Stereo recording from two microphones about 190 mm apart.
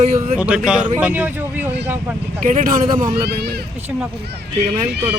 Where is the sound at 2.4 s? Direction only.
45° right (ahead or behind).